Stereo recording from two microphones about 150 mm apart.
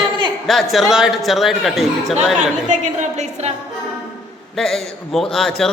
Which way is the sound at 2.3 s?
55° right (ahead or behind).